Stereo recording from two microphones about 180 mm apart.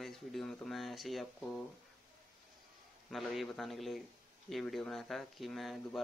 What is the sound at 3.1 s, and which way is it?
Speech, centre (ahead or behind).